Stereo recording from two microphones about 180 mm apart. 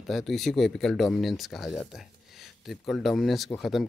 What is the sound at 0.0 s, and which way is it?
Speech, centre (ahead or behind).